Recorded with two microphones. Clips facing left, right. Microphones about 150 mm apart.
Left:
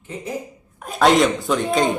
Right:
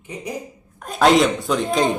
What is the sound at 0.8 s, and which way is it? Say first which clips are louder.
Speech: even; centre (ahead or behind).